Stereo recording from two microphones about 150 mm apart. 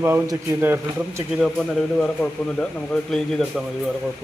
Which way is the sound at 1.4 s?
5° left (ahead or behind).